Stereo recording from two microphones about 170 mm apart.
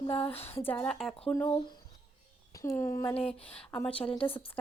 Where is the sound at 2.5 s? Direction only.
15° left (ahead or behind).